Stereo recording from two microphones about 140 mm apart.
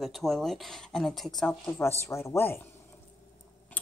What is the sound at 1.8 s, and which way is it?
Speech, 15° left (ahead or behind).